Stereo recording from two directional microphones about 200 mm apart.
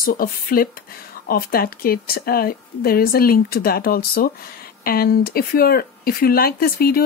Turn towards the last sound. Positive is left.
turn(degrees=50)  # may be behind; listen again after turning